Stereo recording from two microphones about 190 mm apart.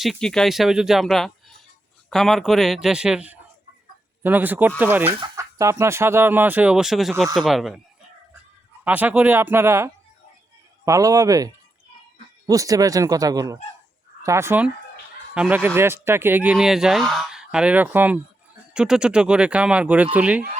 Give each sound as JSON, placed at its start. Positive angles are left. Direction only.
{"t": 0.0, "sound": "speech", "side_deg": 0}
{"t": 8.8, "sound": "speech", "side_deg": -10}